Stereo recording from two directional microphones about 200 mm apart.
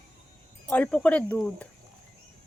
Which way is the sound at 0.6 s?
5° left (ahead or behind).